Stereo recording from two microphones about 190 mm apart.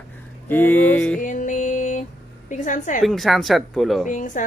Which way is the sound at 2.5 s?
40° left (ahead or behind).